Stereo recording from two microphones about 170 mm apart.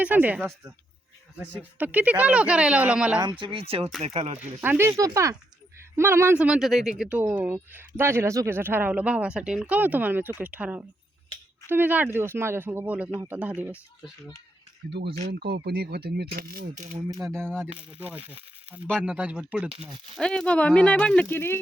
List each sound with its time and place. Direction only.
0.0 s speech: 10° right (ahead or behind)
3.2 s speech: 30° right (ahead or behind)
4.4 s speech: 10° right (ahead or behind)
14.8 s speech: 85° right
15.2 s speech: 75° right (ahead or behind); by 16.9 s 50° right (ahead or behind)
17.1 s speech: 20° right (ahead or behind)
19.7 s speech: 35° right (ahead or behind)
20.1 s speech: 5° left (ahead or behind)